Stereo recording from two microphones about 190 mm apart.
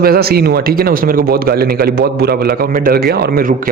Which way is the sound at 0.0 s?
50° right (ahead or behind).